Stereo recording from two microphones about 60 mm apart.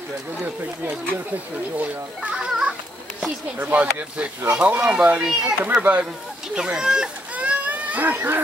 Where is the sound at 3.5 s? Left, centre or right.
Right.